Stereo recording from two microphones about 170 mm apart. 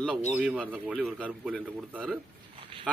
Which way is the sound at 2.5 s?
35° right (ahead or behind).